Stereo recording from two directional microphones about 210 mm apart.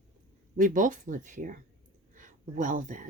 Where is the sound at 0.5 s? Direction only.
40° right (ahead or behind).